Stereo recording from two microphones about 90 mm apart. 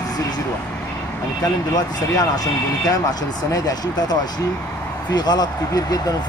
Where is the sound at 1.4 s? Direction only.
45° left (ahead or behind).